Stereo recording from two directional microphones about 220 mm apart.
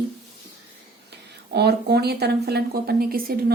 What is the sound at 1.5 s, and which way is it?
A woman's voice, 45° right (ahead or behind).